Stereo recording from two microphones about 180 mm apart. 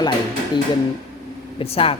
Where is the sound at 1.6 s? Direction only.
30° left (ahead or behind).